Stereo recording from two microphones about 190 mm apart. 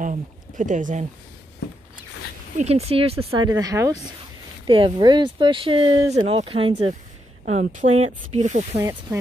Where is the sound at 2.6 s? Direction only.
35° right (ahead or behind).